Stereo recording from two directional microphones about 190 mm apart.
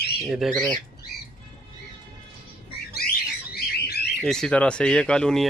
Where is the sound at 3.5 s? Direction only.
55° left (ahead or behind).